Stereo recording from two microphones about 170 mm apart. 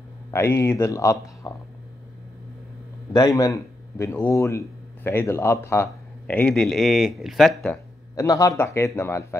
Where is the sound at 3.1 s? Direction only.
20° left (ahead or behind); by 7.8 s centre (ahead or behind).